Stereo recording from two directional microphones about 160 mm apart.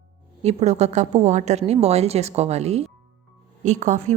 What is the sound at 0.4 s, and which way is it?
A woman's voice, 45° right (ahead or behind).